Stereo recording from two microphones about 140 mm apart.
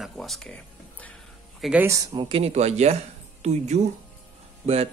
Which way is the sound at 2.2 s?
45° right (ahead or behind).